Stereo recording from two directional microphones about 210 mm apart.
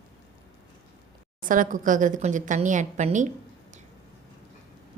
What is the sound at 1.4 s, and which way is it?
A woman's voice, 40° right (ahead or behind).